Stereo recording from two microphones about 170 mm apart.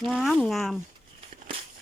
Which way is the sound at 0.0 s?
Centre (ahead or behind).